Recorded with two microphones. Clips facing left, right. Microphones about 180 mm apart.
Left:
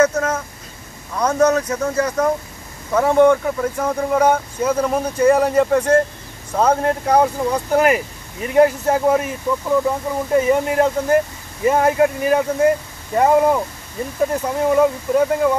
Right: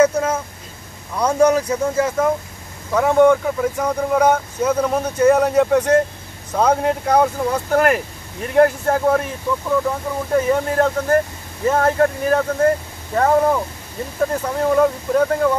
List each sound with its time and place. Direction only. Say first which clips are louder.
0.0 s speech: right 1 dB; 10° right (ahead or behind); by 15.5 s 10° left (ahead or behind)